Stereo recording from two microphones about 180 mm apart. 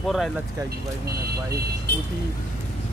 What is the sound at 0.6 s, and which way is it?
Speech, 60° right (ahead or behind).